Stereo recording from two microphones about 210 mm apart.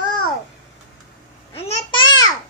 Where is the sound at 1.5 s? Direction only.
25° left (ahead or behind).